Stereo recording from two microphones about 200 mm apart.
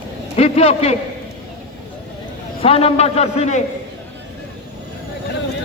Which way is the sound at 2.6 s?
30° left (ahead or behind).